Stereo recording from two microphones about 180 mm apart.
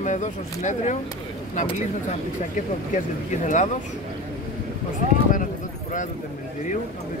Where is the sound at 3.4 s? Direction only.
45° left (ahead or behind).